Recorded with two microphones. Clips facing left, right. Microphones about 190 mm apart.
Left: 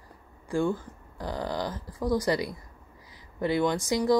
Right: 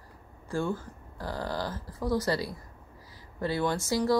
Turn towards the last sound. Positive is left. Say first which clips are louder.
# left 2 dB
turn(degrees=15)  # may be behind; listen again after turning